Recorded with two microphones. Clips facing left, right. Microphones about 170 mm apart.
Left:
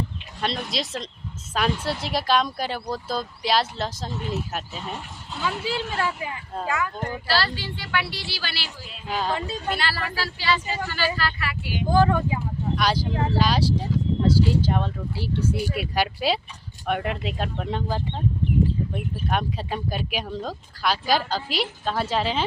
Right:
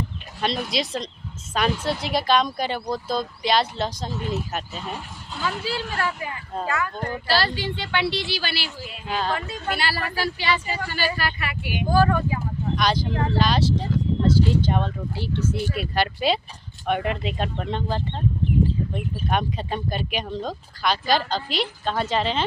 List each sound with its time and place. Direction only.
0.4 s speech: centre (ahead or behind)
5.6 s a woman's voice: 15° left (ahead or behind)
7.3 s speech: 15° right (ahead or behind)
9.0 s a woman's voice: 10° left (ahead or behind)
9.6 s speech: 10° right (ahead or behind)
11.9 s a woman's voice: 15° left (ahead or behind)